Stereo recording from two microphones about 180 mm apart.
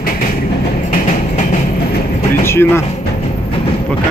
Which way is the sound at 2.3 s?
15° left (ahead or behind).